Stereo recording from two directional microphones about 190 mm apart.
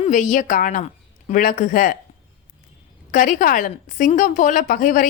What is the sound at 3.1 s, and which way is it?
A woman's voice, 45° left (ahead or behind).